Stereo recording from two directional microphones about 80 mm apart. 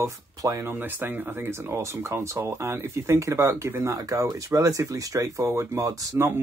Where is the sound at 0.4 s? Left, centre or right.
Right.